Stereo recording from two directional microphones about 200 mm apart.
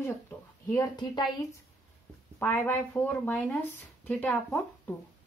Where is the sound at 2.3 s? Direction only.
10° left (ahead or behind).